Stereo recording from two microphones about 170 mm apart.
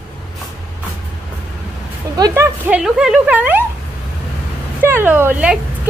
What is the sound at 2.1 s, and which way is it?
Music, 20° right (ahead or behind).